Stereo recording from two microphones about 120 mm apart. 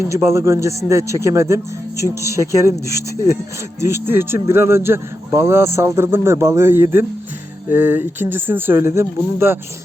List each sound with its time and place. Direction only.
0.1 s a man's voice: 25° right (ahead or behind)